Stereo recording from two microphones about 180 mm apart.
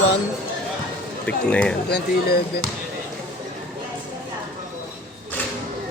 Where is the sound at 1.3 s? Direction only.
5° left (ahead or behind).